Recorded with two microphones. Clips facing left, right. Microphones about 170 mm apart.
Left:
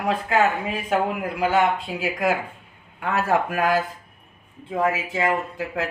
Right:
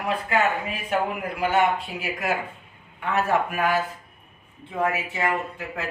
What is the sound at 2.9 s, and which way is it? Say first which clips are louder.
Speech: left 1 dB; 90° left.